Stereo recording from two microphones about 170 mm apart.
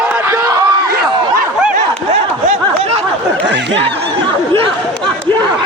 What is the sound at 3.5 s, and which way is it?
Speech, 90° right.